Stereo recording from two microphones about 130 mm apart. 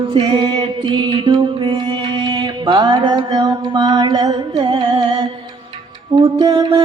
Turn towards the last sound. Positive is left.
turn(degrees=-30)  # may be behind; listen again after turning